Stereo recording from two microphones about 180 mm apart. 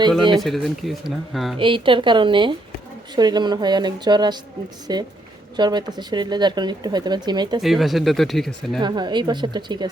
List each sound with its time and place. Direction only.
0.4 s speech: centre (ahead or behind)
1.5 s speech: 30° right (ahead or behind)
7.6 s speech: centre (ahead or behind)
8.8 s speech: 25° right (ahead or behind)